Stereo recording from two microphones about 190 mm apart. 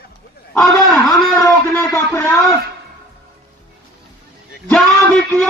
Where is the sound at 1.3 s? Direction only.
15° left (ahead or behind).